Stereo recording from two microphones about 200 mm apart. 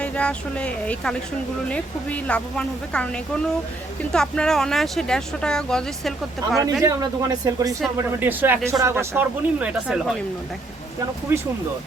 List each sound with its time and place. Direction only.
0.0 s speech: 5° left (ahead or behind)
6.8 s speech: 20° right (ahead or behind)